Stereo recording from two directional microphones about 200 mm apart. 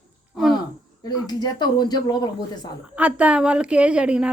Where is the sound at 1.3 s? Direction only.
20° left (ahead or behind).